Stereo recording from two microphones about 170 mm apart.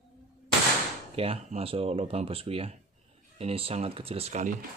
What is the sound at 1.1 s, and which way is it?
Speech, 35° right (ahead or behind).